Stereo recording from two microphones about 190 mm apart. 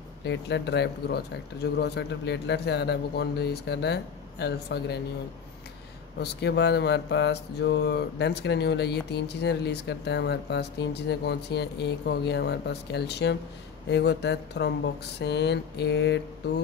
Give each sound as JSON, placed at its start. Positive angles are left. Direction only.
{"t": 0.2, "sound": "speech", "side_deg": 65}
{"t": 6.1, "sound": "speech", "side_deg": 60}